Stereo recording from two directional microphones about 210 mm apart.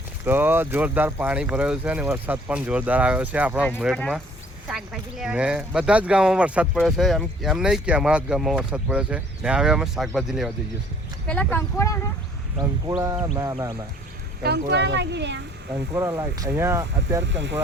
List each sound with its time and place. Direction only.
0.3 s speech: 10° right (ahead or behind); by 11.9 s 10° left (ahead or behind)
13.3 s speech: 15° right (ahead or behind)
14.4 s speech: 55° right (ahead or behind)
16.0 s speech: 15° right (ahead or behind)
17.2 s speech: 60° right (ahead or behind)